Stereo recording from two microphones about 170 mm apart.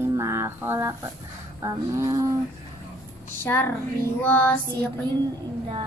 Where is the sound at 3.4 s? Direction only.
15° left (ahead or behind).